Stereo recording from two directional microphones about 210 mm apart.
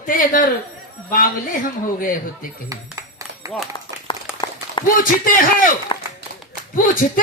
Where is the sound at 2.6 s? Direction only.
15° right (ahead or behind).